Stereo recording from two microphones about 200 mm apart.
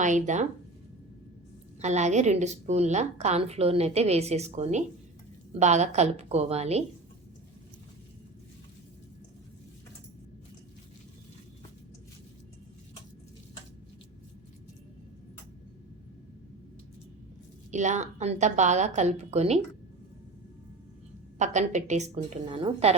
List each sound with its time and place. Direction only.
0.0 s a woman's voice: 35° right (ahead or behind)
1.8 s a woman's voice: 35° right (ahead or behind)
17.7 s a woman's voice: 35° right (ahead or behind)
21.3 s a woman's voice: 35° right (ahead or behind)